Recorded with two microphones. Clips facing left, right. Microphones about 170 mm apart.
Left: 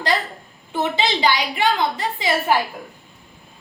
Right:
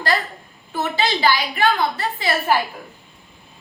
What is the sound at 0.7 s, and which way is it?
A woman's voice, 20° left (ahead or behind).